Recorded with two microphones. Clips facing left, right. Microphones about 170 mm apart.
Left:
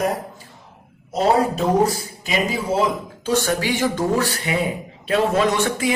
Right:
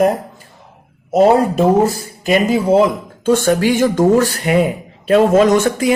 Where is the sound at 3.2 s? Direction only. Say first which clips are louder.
Right 8 dB; 50° right (ahead or behind).